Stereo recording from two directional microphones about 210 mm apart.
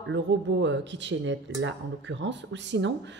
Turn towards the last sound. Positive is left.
turn(degrees=-60)  # may be behind; listen again after turning